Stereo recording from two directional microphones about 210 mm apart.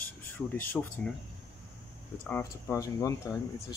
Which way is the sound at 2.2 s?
10° left (ahead or behind).